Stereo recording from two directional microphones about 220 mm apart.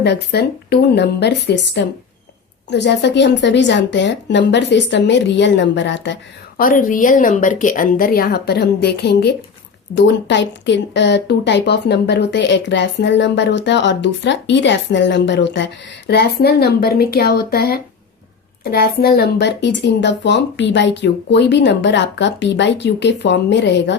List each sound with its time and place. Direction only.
0.0 s a woman's voice: 50° left (ahead or behind)
6.6 s a woman's voice: 40° left (ahead or behind)